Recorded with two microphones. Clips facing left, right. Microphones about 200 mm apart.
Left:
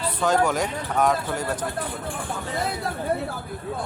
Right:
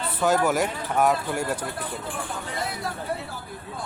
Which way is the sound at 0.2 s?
5° right (ahead or behind).